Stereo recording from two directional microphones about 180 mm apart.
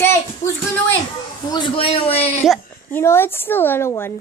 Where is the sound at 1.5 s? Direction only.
30° left (ahead or behind).